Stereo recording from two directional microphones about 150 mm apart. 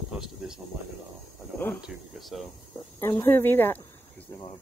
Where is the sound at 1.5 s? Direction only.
15° left (ahead or behind).